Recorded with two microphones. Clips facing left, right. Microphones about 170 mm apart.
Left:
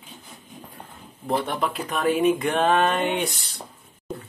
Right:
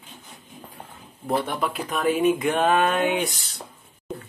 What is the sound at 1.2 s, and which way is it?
Speech, centre (ahead or behind).